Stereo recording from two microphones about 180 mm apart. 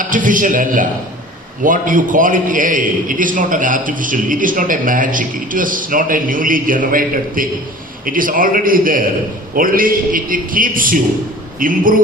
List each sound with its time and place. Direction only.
0.0 s a man's voice: 45° right (ahead or behind)